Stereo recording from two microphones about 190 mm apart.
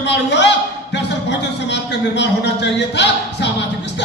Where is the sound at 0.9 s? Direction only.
65° left (ahead or behind).